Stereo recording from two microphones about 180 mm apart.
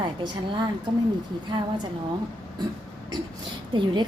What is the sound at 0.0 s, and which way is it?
A woman's voice, 25° right (ahead or behind).